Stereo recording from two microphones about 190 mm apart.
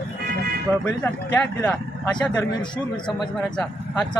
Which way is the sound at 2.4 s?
25° left (ahead or behind).